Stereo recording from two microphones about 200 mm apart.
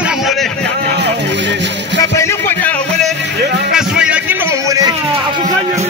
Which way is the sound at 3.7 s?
5° right (ahead or behind).